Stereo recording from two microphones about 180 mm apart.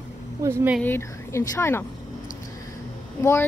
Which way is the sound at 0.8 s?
15° left (ahead or behind).